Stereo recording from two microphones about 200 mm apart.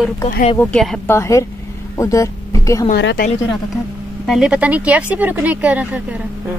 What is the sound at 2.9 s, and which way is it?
Speech, 50° left (ahead or behind).